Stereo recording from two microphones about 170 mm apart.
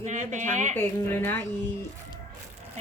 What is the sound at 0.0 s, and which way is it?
Speech, 45° right (ahead or behind).